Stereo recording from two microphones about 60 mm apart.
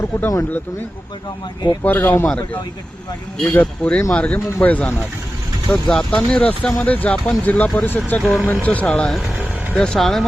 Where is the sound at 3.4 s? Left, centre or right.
Left.